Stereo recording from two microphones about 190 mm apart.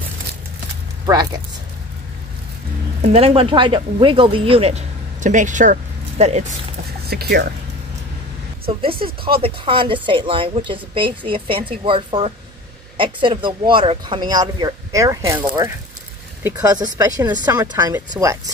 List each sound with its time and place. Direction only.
3.1 s speech: 30° right (ahead or behind)
7.1 s speech: 55° right (ahead or behind)
9.0 s speech: 30° right (ahead or behind)